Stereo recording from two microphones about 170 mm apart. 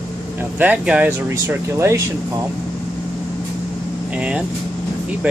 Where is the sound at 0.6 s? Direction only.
10° right (ahead or behind).